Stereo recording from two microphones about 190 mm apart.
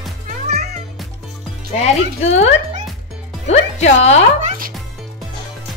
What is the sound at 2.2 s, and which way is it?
Speech, 35° left (ahead or behind).